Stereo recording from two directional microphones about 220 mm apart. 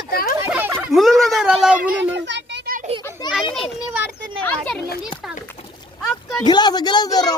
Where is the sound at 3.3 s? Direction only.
Centre (ahead or behind).